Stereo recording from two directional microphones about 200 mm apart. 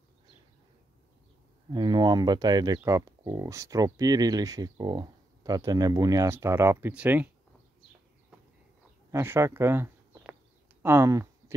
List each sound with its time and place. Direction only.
1.7 s speech: 20° right (ahead or behind)
9.1 s speech: 10° right (ahead or behind)
10.8 s a sound: 10° right (ahead or behind)